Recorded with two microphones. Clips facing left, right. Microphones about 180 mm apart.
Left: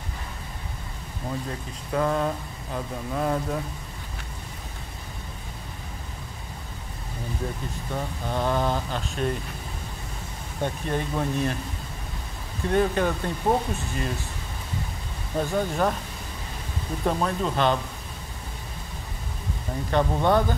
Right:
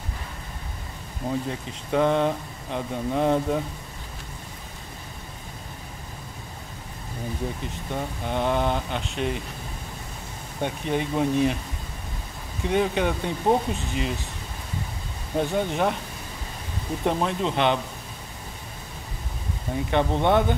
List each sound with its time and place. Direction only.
1.5 s speech: 25° right (ahead or behind)
7.9 s speech: 20° right (ahead or behind)
10.6 s speech: 15° right (ahead or behind)
12.6 s speech: 15° right (ahead or behind)
15.4 s speech: 20° right (ahead or behind)
17.0 s speech: 20° right (ahead or behind)
19.9 s speech: 20° right (ahead or behind)